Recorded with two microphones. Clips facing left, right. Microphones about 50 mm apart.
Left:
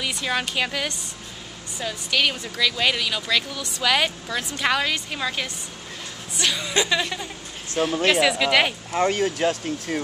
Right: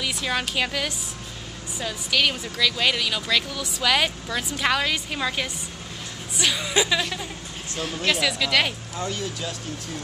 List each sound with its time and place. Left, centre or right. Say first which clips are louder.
0.0 s speech: left 1 dB; centre
7.8 s speech: left 5 dB; centre
8.9 s speech: left 8 dB; left